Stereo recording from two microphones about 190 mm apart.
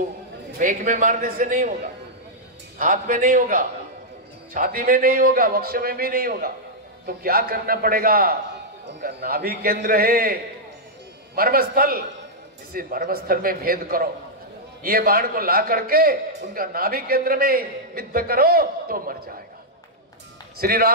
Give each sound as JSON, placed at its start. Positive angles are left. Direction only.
{"t": 0.6, "sound": "a man's voice", "side_deg": -45}
{"t": 2.8, "sound": "a man's voice", "side_deg": -45}
{"t": 20.5, "sound": "a man's voice", "side_deg": -50}